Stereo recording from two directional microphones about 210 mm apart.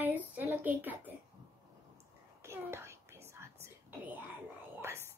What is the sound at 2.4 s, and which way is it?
Whispering, 10° right (ahead or behind).